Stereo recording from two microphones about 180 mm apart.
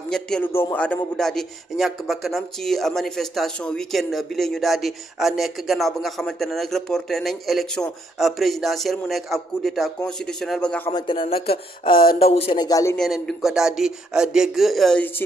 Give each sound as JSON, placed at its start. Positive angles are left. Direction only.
{"t": 0.1, "sound": "a man's voice", "side_deg": 5}
{"t": 10.9, "sound": "a man's voice", "side_deg": 25}
{"t": 11.9, "sound": "speech", "side_deg": 50}
{"t": 12.2, "sound": "speech", "side_deg": 35}
{"t": 12.6, "sound": "a man's voice", "side_deg": 20}
{"t": 12.9, "sound": "a man's voice", "side_deg": 5}